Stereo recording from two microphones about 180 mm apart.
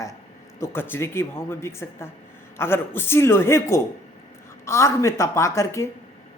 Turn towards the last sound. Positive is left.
turn(degrees=15)  # may be behind; listen again after turning